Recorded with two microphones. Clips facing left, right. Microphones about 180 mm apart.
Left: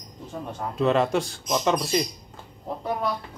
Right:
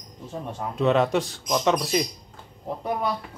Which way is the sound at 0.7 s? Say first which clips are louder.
Right 1 dB; centre (ahead or behind).